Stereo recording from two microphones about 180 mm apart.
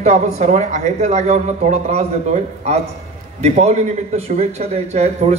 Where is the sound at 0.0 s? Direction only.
40° right (ahead or behind).